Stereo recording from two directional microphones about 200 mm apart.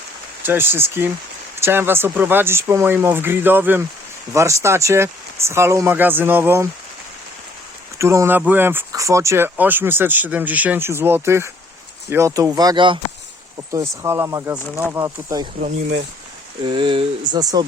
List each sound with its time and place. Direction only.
0.4 s speech: 10° right (ahead or behind)
7.9 s speech: 15° right (ahead or behind)
16.6 s speech: 25° right (ahead or behind)